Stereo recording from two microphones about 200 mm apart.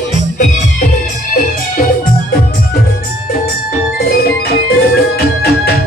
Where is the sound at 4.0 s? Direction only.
55° left (ahead or behind).